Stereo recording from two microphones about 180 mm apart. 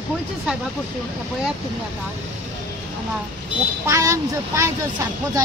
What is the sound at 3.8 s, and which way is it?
Speech, 15° right (ahead or behind).